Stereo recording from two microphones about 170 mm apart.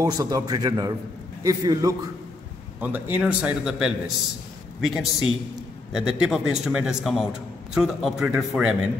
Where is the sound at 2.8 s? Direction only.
10° right (ahead or behind).